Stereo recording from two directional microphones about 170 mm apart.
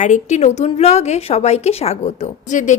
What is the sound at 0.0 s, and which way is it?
Speech, 45° left (ahead or behind).